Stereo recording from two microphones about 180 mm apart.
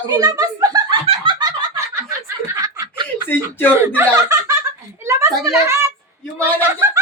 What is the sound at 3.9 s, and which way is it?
Speech, 15° right (ahead or behind).